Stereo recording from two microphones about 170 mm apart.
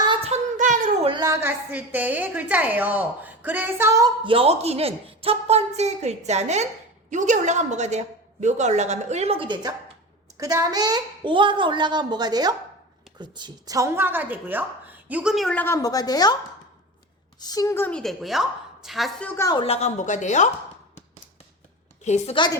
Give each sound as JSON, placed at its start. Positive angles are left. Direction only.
{"t": 0.0, "sound": "a sound", "side_deg": -30}
{"t": 1.0, "sound": "a woman's voice", "side_deg": -25}
{"t": 17.4, "sound": "a woman's voice", "side_deg": 20}
{"t": 19.3, "sound": "a woman's voice", "side_deg": 15}
{"t": 19.5, "sound": "a woman's voice", "side_deg": 35}
{"t": 22.0, "sound": "a woman's voice", "side_deg": 40}